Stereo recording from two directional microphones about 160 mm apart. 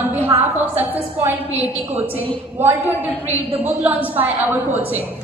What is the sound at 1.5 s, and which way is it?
Speech, 40° right (ahead or behind).